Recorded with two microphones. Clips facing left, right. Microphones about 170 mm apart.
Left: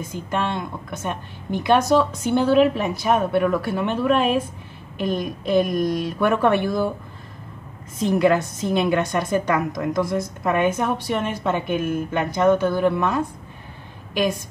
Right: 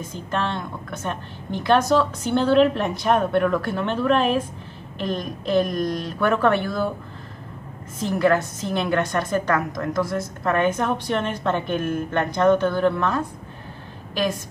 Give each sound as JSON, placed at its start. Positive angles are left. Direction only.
{"t": 0.1, "sound": "a woman's voice", "side_deg": 10}
{"t": 8.0, "sound": "a woman's voice", "side_deg": 15}